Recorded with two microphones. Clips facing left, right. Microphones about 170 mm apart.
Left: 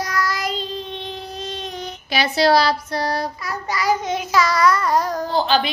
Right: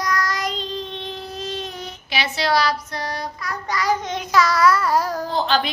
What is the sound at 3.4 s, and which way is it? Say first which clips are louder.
Child singing: right 1 dB; 5° left (ahead or behind).